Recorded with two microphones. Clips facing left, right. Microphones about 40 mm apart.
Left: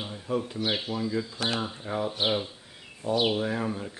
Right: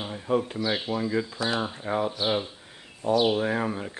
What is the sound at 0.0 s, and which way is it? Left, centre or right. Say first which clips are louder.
Speech: right 4 dB; right.